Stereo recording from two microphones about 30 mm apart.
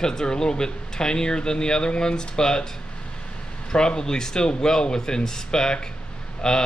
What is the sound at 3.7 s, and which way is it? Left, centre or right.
Speech, left.